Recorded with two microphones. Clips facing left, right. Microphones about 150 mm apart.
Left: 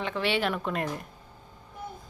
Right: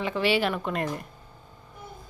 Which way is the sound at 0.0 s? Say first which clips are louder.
Right 3 dB; 5° right (ahead or behind).